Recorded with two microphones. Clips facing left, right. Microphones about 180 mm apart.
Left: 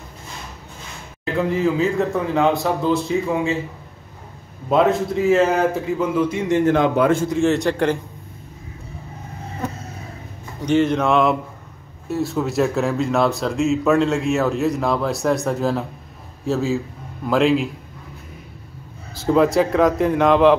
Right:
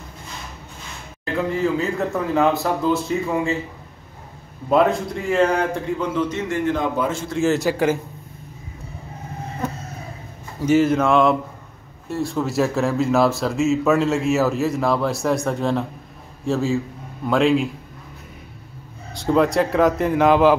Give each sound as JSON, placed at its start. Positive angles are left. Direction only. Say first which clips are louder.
{"t": 1.2, "sound": "speech", "louder": "left 2 dB", "side_deg": 0}
{"t": 4.6, "sound": "speech", "louder": "left 1 dB", "side_deg": 0}
{"t": 6.7, "sound": "a man's voice", "louder": "left 7 dB", "side_deg": 65}
{"t": 7.3, "sound": "speech", "louder": "left 1 dB", "side_deg": 0}
{"t": 10.6, "sound": "speech", "louder": "right 1 dB", "side_deg": -5}
{"t": 19.1, "sound": "speech", "louder": "left 2 dB", "side_deg": 0}